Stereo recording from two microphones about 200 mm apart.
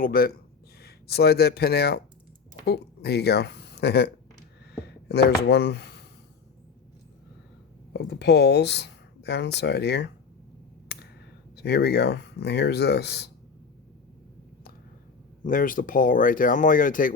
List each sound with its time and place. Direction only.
0.0 s speech: 45° left (ahead or behind)
4.7 s a sound: 55° left (ahead or behind)
7.9 s speech: 55° left (ahead or behind)
10.9 s clicking: 55° left (ahead or behind)
11.5 s speech: 55° left (ahead or behind)
15.4 s speech: 40° left (ahead or behind)